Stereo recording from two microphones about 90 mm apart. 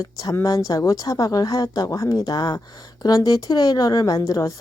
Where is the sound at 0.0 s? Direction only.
40° left (ahead or behind).